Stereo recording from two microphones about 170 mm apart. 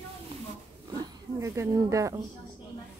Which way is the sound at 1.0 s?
20° right (ahead or behind).